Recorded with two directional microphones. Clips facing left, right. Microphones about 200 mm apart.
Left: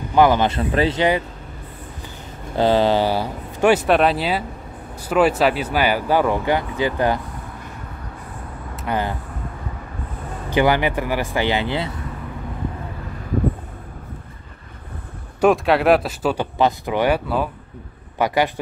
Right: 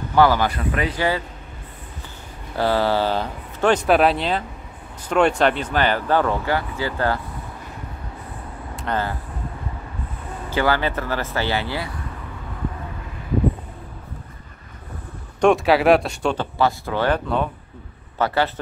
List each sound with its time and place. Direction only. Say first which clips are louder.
0.1 s a man's voice: left 2 dB; 20° left (ahead or behind)
2.5 s speech: left 3 dB; 20° left (ahead or behind)
8.7 s speech: left 1 dB; 10° left (ahead or behind)
10.5 s speech: left 3 dB; 15° left (ahead or behind)
15.4 s speech: even; centre (ahead or behind)
16.5 s a man's voice: left 2 dB; 20° left (ahead or behind)